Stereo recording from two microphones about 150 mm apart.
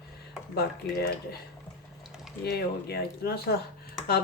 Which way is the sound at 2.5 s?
90° left.